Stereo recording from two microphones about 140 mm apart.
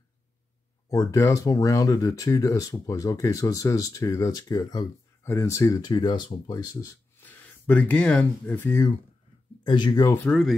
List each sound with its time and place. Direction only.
0.8 s speech: 20° left (ahead or behind)
7.2 s speech: 10° left (ahead or behind)
9.6 s speech: 35° left (ahead or behind)
10.0 s speech: 10° left (ahead or behind)